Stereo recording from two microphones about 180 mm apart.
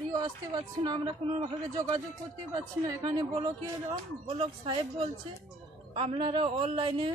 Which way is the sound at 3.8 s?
30° right (ahead or behind).